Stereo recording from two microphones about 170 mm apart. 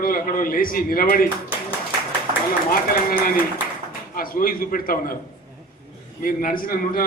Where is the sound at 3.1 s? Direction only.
55° left (ahead or behind).